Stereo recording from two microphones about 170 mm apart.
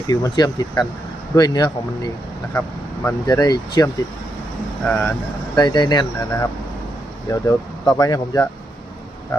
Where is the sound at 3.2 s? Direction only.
20° left (ahead or behind).